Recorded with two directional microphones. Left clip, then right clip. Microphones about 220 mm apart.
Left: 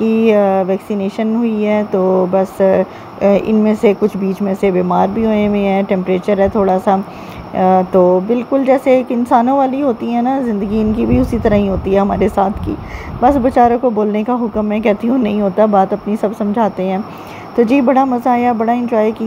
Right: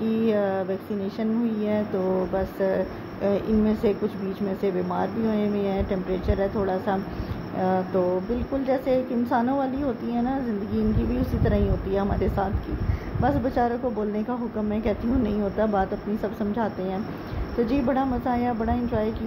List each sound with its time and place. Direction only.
0.1 s a woman's voice: 25° left (ahead or behind)